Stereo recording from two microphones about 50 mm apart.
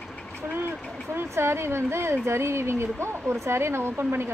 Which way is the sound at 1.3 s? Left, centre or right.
Right.